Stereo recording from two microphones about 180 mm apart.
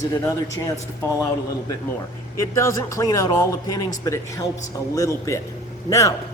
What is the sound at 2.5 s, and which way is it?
A man's voice, 15° left (ahead or behind).